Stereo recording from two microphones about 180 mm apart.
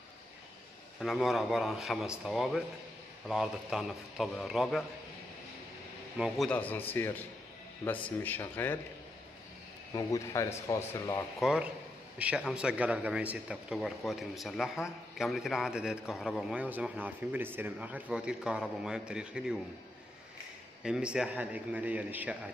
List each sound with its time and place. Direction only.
0.9 s a man's voice: centre (ahead or behind)
6.1 s a man's voice: centre (ahead or behind)
9.9 s speech: 15° left (ahead or behind)
11.3 s a man's voice: 5° right (ahead or behind)
20.8 s a man's voice: 5° right (ahead or behind)